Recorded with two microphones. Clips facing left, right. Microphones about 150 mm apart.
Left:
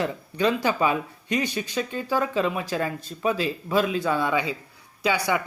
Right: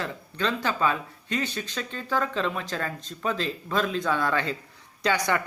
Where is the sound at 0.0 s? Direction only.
15° left (ahead or behind).